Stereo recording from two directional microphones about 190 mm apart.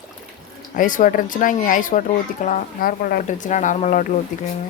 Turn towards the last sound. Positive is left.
turn(degrees=45)  # may be behind; listen again after turning